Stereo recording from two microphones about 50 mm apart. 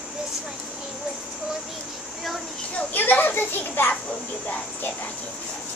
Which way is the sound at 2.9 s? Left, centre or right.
Left.